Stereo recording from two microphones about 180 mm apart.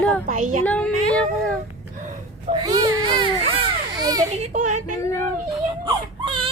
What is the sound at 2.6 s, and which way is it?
Baby cry, 25° right (ahead or behind).